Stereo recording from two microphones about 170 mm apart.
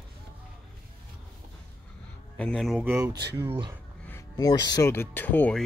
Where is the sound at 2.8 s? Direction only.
15° right (ahead or behind).